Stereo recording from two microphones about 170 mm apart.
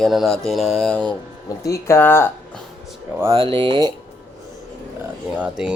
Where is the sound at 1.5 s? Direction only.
20° left (ahead or behind).